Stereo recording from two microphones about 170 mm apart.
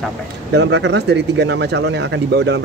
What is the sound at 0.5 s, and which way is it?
Speech, 90° right.